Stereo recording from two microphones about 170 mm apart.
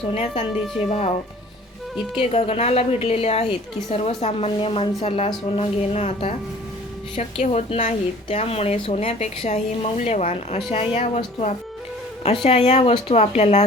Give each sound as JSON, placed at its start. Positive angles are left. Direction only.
{"t": 0.1, "sound": "a woman's voice", "side_deg": 40}
{"t": 2.3, "sound": "a woman's voice", "side_deg": 40}